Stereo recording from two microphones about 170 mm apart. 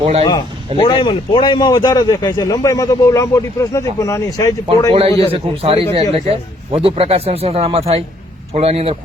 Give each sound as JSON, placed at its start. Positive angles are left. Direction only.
{"t": 0.0, "sound": "a man's voice", "side_deg": -35}
{"t": 0.8, "sound": "speech", "side_deg": 30}
{"t": 4.9, "sound": "a man's voice", "side_deg": -35}